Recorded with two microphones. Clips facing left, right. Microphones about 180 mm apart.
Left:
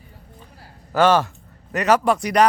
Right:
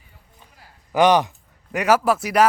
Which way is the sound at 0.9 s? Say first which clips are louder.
Right 1 dB; 15° right (ahead or behind).